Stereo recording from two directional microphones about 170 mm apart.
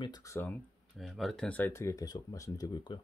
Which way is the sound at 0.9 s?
Centre (ahead or behind).